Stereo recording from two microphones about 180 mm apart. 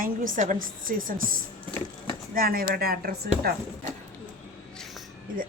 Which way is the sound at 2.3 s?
55° right (ahead or behind).